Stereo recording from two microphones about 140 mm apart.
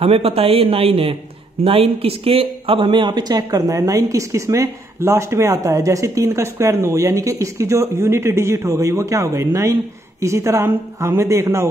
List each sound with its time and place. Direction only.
0.0 s speech: 45° right (ahead or behind); by 11.6 s 20° right (ahead or behind)